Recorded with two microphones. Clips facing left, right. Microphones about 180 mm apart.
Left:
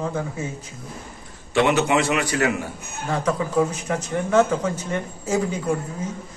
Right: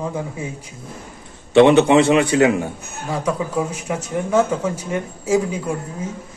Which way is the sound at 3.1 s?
10° right (ahead or behind).